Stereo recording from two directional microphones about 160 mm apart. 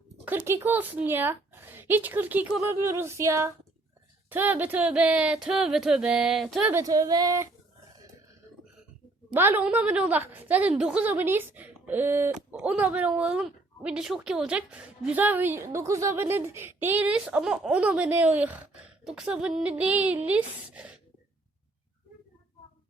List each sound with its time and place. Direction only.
0.3 s a woman's voice: 15° right (ahead or behind)
6.7 s speech: 20° right (ahead or behind)
9.3 s a woman's voice: 15° right (ahead or behind)